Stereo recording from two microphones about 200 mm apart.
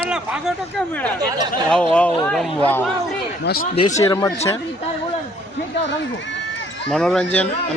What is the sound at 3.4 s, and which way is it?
Speech, 50° left (ahead or behind).